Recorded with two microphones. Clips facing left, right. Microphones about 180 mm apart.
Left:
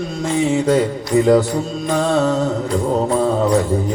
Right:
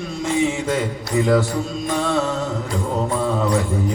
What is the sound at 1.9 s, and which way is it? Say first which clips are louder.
Music: left 4 dB; 40° left (ahead or behind).